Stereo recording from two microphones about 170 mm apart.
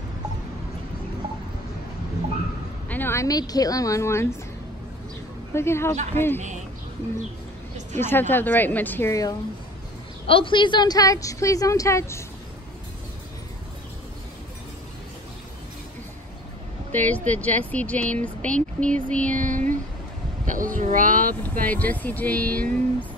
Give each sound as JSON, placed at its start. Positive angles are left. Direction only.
{"t": 2.9, "sound": "speech", "side_deg": 15}
{"t": 5.5, "sound": "speech", "side_deg": 15}
{"t": 8.0, "sound": "speech", "side_deg": 10}
{"t": 10.2, "sound": "a woman's voice", "side_deg": 30}
{"t": 16.9, "sound": "speech", "side_deg": 10}
{"t": 19.3, "sound": "speech", "side_deg": -50}
{"t": 21.4, "sound": "speech", "side_deg": 10}